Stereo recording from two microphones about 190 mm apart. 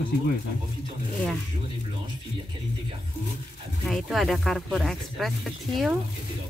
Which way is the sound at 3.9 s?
Centre (ahead or behind).